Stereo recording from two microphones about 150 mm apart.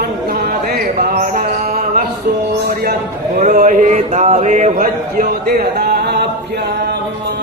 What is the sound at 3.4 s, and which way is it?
Speech, 55° right (ahead or behind).